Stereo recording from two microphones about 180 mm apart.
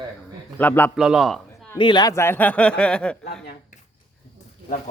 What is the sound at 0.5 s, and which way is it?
Speech, 10° left (ahead or behind).